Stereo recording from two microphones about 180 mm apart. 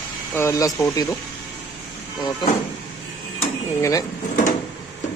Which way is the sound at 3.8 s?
20° left (ahead or behind).